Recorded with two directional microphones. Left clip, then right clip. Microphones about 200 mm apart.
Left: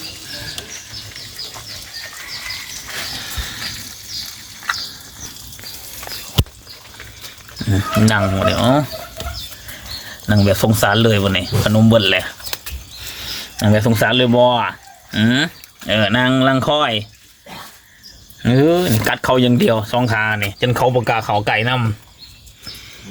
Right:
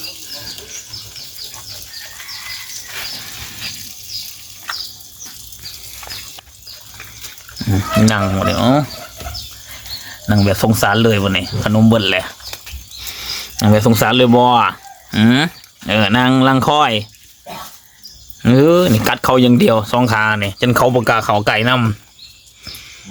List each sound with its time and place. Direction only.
7.7 s speech: 15° right (ahead or behind)
10.2 s speech: 10° right (ahead or behind)
13.0 s speech: 20° right (ahead or behind)
18.4 s speech: 30° right (ahead or behind)